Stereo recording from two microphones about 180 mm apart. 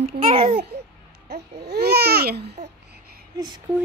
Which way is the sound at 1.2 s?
65° right (ahead or behind).